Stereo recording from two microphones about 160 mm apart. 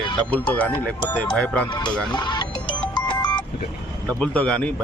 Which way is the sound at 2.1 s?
30° left (ahead or behind).